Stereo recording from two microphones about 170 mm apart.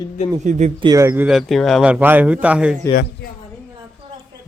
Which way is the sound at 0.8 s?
20° right (ahead or behind).